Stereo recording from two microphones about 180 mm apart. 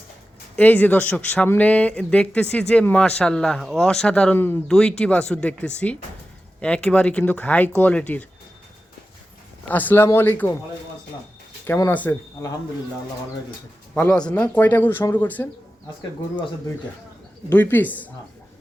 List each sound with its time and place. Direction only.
0.5 s speech: 10° left (ahead or behind)
9.6 s speech: 10° left (ahead or behind)
11.6 s speech: 10° left (ahead or behind)
13.9 s speech: 10° left (ahead or behind)
16.3 s speech: 25° left (ahead or behind)
17.5 s speech: 10° left (ahead or behind)